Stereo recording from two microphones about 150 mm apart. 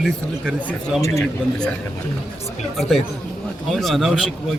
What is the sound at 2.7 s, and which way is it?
Speech, centre (ahead or behind).